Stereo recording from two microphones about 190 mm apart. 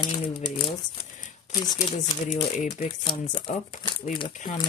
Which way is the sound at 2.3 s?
40° left (ahead or behind).